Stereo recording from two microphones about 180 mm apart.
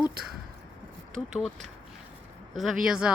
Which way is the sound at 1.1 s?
Centre (ahead or behind).